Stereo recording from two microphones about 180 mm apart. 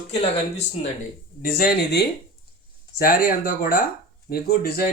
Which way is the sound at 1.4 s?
55° left (ahead or behind).